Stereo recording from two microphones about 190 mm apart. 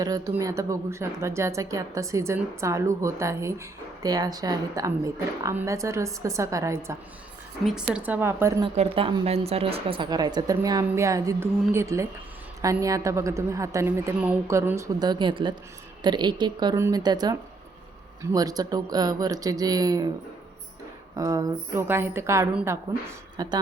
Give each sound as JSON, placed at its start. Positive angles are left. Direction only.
{"t": 0.0, "sound": "speech", "side_deg": -20}
{"t": 8.6, "sound": "a woman's voice", "side_deg": -30}
{"t": 21.2, "sound": "a woman's voice", "side_deg": -20}